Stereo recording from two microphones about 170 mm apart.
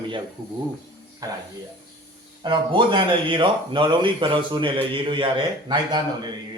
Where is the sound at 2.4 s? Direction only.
30° right (ahead or behind).